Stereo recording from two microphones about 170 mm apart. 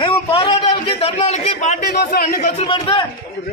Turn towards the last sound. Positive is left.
turn(degrees=30)  # may be behind; listen again after turning